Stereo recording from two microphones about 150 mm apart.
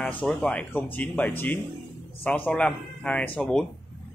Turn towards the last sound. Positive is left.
turn(degrees=5)  # may be behind; listen again after turning